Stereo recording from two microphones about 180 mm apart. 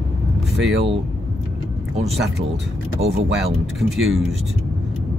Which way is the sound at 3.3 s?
Centre (ahead or behind).